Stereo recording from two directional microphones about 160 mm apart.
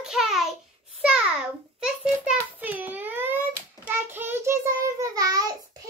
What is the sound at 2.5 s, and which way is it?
A child's voice, 10° right (ahead or behind).